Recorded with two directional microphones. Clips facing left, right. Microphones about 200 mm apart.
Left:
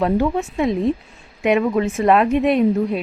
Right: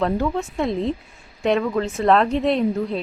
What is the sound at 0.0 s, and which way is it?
A woman's voice, 10° left (ahead or behind).